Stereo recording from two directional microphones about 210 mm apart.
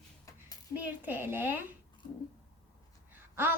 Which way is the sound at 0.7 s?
10° right (ahead or behind).